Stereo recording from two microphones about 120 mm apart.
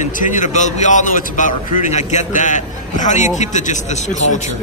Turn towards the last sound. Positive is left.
turn(degrees=85)